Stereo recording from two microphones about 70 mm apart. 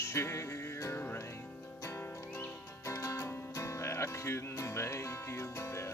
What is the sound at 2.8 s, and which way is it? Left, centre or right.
Music, left.